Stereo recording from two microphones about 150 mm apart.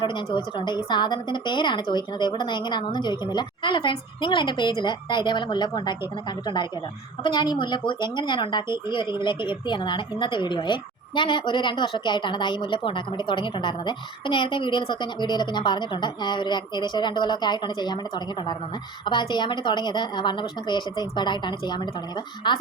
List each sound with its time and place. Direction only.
0.0 s a woman's voice: 35° left (ahead or behind)